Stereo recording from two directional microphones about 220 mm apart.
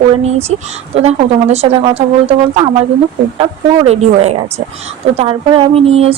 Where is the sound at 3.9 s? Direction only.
30° right (ahead or behind).